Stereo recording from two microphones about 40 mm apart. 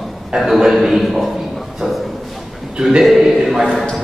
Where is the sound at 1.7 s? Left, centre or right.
Centre.